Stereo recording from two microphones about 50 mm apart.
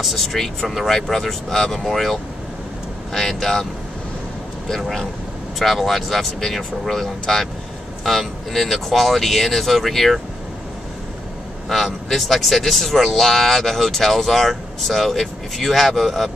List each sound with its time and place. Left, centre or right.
0.0 s speech: centre
4.6 s speech: centre
11.7 s speech: centre